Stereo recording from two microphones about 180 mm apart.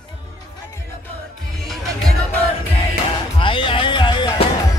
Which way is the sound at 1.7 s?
Centre (ahead or behind).